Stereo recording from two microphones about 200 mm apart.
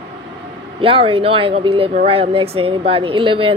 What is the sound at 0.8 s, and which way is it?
A woman's voice, 25° right (ahead or behind).